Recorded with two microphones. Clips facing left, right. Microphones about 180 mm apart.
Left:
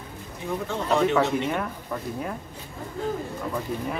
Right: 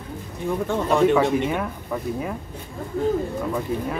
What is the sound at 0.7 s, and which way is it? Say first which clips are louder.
Speech: right 4 dB; 50° right (ahead or behind).